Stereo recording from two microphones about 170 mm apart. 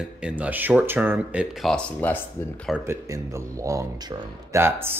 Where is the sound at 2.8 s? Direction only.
15° right (ahead or behind).